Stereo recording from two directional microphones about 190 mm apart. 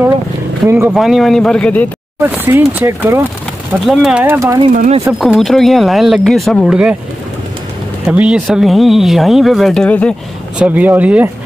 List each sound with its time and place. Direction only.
0.7 s speech: 15° right (ahead or behind)
0.9 s speech: centre (ahead or behind)
2.1 s speech: 10° right (ahead or behind)
3.8 s speech: centre (ahead or behind)
4.7 s speech: 40° right (ahead or behind)
5.2 s speech: centre (ahead or behind)
8.1 s speech: 5° right (ahead or behind)
10.6 s speech: 10° right (ahead or behind)